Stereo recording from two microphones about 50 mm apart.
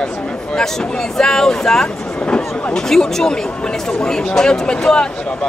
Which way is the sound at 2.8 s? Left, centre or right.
Centre.